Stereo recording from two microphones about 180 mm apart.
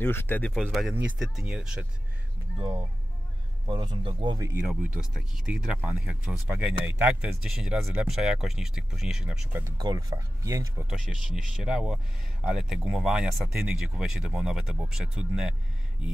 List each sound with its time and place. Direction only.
0.0 s speech: 10° left (ahead or behind)
0.6 s speech: centre (ahead or behind)
3.6 s speech: 25° right (ahead or behind)
4.6 s speech: 5° right (ahead or behind)
9.8 s speech: 20° right (ahead or behind)
10.9 s speech: 5° right (ahead or behind)